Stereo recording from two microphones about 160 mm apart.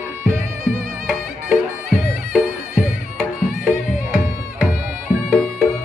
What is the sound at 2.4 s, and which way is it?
Music, 10° right (ahead or behind).